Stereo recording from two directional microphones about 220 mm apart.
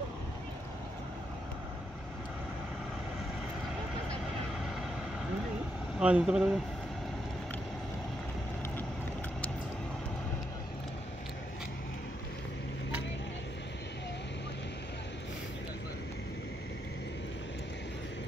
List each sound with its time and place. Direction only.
5.9 s speech: 5° right (ahead or behind)